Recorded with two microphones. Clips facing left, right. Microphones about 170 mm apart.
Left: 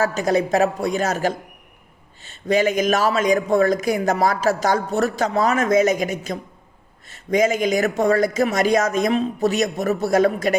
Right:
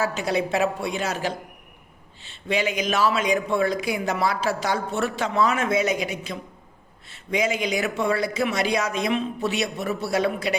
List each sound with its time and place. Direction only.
0.0 s speech: 45° left (ahead or behind)